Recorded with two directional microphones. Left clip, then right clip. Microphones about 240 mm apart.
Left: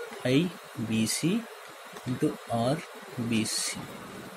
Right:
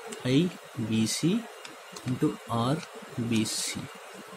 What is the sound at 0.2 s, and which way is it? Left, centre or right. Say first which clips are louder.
Speech: even; centre.